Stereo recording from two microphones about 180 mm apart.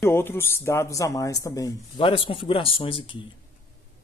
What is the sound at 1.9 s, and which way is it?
Speech, 30° left (ahead or behind).